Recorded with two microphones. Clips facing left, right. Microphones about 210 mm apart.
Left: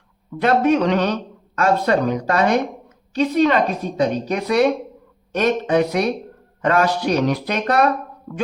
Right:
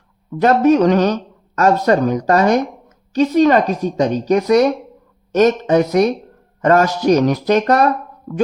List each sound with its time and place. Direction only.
0.3 s speech: 40° right (ahead or behind)